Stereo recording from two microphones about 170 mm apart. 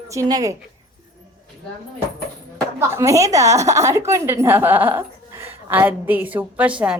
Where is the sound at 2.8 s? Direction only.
15° right (ahead or behind).